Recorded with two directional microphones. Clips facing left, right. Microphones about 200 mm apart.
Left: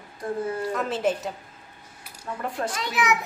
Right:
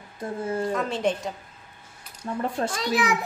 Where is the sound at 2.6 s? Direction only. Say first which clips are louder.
Right 1 dB; 35° right (ahead or behind).